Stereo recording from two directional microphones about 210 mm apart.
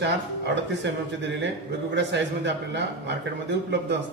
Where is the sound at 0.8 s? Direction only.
60° right (ahead or behind).